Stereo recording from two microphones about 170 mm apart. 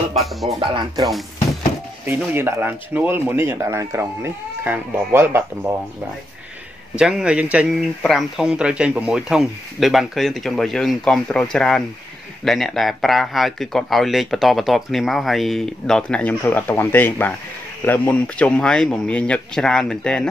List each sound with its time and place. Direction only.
0.1 s speech: centre (ahead or behind)
2.0 s speech: 15° right (ahead or behind)
7.0 s speech: 5° right (ahead or behind)